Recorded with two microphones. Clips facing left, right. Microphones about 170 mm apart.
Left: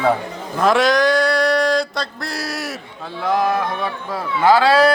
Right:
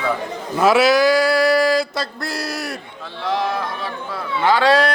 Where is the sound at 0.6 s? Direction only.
5° right (ahead or behind).